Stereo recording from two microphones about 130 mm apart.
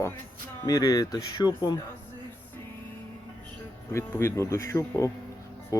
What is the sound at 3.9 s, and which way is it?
Speech, 20° left (ahead or behind).